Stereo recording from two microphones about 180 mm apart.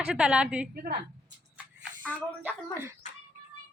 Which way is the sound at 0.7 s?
55° right (ahead or behind).